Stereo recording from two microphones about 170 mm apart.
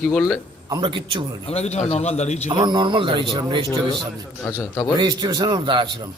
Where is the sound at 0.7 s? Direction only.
30° right (ahead or behind).